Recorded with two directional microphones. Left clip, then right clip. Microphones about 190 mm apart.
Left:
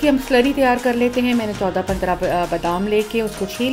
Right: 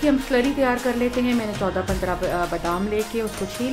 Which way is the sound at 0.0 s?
15° left (ahead or behind).